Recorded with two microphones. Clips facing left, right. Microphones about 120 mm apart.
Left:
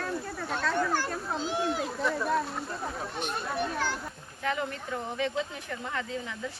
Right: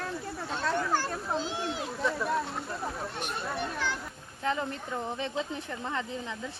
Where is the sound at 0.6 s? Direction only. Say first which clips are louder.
Even; 25° right (ahead or behind).